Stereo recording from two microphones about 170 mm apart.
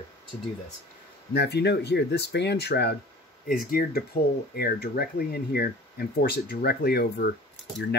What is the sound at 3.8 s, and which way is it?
Speech, 55° left (ahead or behind).